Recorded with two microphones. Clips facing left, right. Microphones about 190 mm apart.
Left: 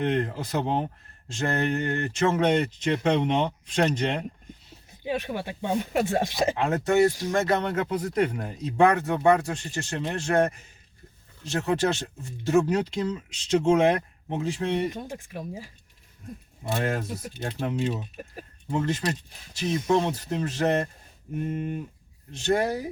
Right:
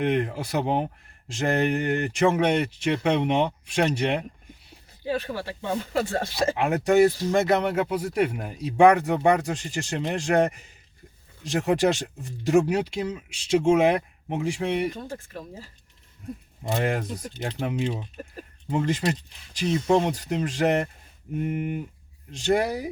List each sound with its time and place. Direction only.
0.0 s speech: 15° right (ahead or behind)
5.0 s speech: 15° left (ahead or behind)
6.6 s speech: 15° right (ahead or behind)
14.9 s speech: 15° left (ahead or behind)
16.7 s speech: 15° right (ahead or behind)